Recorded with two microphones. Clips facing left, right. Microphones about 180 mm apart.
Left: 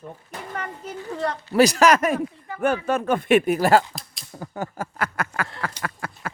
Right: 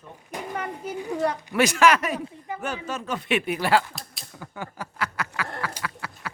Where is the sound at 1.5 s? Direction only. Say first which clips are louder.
Left 4 dB; 35° left (ahead or behind).